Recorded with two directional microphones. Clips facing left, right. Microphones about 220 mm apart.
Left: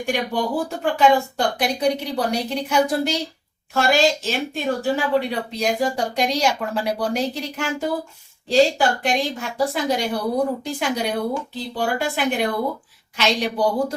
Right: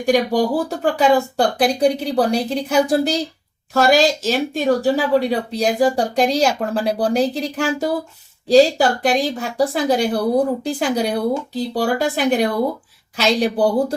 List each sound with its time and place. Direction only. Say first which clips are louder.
0.0 s speech: right 7 dB; 40° right (ahead or behind)